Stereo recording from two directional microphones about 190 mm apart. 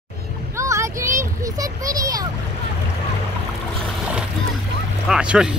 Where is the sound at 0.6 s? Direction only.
15° right (ahead or behind).